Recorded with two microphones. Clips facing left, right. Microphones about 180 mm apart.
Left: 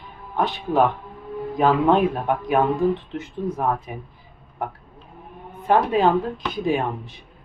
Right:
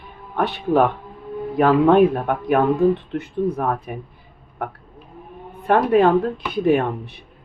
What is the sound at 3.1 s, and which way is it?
Speech, 60° right (ahead or behind).